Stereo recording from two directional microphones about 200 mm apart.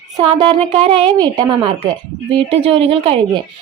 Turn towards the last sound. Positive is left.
turn(degrees=-30)  # may be behind; listen again after turning